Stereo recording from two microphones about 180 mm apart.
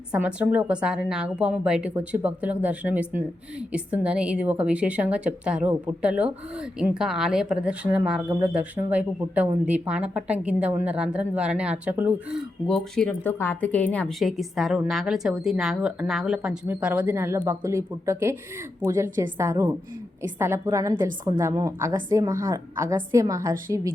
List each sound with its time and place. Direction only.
0.1 s a woman's voice: 5° right (ahead or behind)
12.6 s a woman's voice: 5° left (ahead or behind); by 23.9 s 20° right (ahead or behind)